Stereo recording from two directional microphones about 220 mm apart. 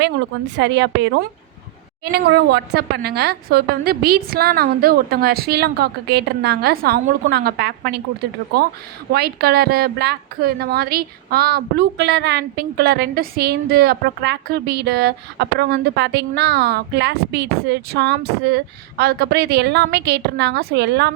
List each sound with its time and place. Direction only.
0.0 s a woman's voice: 50° right (ahead or behind)
2.1 s a woman's voice: 45° right (ahead or behind)